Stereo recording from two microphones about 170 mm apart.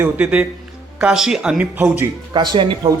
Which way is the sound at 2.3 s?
25° right (ahead or behind).